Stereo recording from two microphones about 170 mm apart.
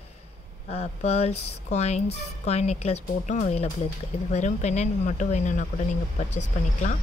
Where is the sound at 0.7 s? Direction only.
40° left (ahead or behind).